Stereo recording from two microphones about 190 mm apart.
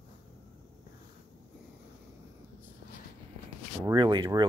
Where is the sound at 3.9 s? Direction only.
25° right (ahead or behind).